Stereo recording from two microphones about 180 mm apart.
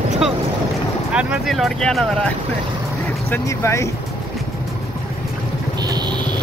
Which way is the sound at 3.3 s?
15° left (ahead or behind).